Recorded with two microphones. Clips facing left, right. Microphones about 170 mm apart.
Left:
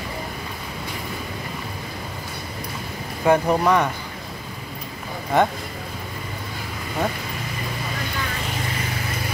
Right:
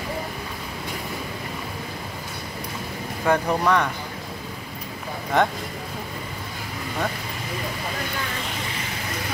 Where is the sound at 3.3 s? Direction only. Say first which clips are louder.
Left 3 dB; 10° left (ahead or behind).